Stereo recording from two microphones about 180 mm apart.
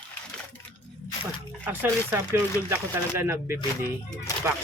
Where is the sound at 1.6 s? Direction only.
10° right (ahead or behind).